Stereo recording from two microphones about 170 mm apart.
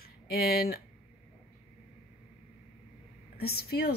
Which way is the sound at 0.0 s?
65° left (ahead or behind).